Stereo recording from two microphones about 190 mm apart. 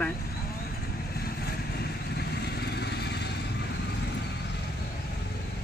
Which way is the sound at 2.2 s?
60° left (ahead or behind).